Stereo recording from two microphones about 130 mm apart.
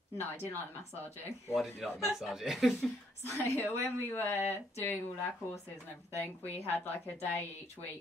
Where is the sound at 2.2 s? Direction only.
Centre (ahead or behind).